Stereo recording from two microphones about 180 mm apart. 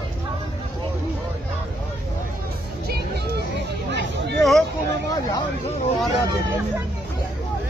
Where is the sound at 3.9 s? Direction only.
70° right (ahead or behind).